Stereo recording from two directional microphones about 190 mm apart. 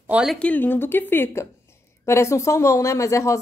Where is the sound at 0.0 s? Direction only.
5° right (ahead or behind).